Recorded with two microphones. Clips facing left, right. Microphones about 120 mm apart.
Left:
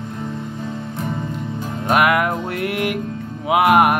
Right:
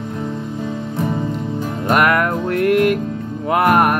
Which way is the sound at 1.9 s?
5° left (ahead or behind).